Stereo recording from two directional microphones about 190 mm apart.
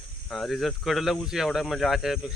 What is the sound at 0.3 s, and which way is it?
Speech, centre (ahead or behind).